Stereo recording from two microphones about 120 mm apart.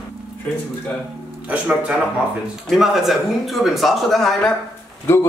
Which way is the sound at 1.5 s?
10° right (ahead or behind).